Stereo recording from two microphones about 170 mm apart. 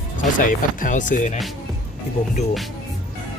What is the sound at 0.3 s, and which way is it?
Speech, 50° left (ahead or behind).